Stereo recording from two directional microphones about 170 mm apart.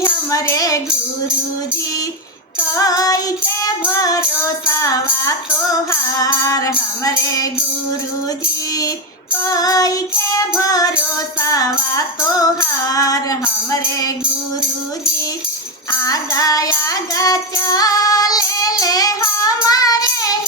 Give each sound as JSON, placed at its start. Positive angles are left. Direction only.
{"t": 0.0, "sound": "music", "side_deg": 15}
{"t": 2.7, "sound": "music", "side_deg": 20}
{"t": 9.4, "sound": "music", "side_deg": 20}
{"t": 15.9, "sound": "music", "side_deg": 20}